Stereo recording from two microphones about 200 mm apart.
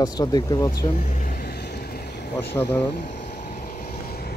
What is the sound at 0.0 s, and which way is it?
Speech, 20° left (ahead or behind).